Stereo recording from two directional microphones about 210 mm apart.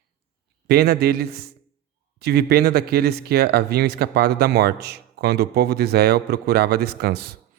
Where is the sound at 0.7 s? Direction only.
50° right (ahead or behind).